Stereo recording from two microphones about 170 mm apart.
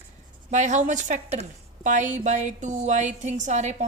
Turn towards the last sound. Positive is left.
turn(degrees=-45)  # may be behind; listen again after turning